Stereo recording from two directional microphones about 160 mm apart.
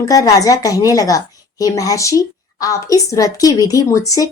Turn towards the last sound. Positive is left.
turn(degrees=20)  # may be behind; listen again after turning